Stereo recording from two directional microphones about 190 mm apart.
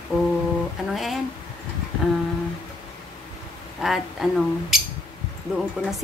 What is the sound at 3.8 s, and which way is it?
Speech, centre (ahead or behind).